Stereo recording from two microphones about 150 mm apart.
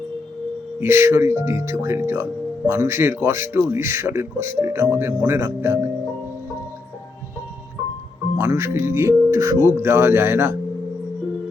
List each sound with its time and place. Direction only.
0.8 s speech: 15° right (ahead or behind)
8.4 s speech: 15° right (ahead or behind)